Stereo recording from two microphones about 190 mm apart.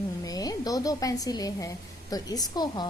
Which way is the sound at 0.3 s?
20° left (ahead or behind).